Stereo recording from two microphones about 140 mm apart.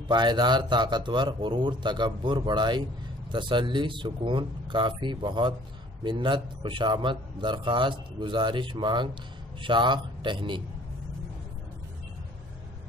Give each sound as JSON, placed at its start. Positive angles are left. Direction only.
{"t": 0.1, "sound": "a man's voice", "side_deg": -30}